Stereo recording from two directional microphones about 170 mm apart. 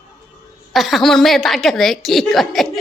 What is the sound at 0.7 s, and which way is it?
Speech, centre (ahead or behind).